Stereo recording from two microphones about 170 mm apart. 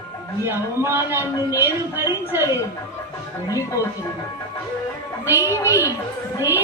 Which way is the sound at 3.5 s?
20° left (ahead or behind).